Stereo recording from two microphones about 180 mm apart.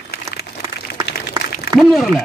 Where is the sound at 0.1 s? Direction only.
65° left (ahead or behind).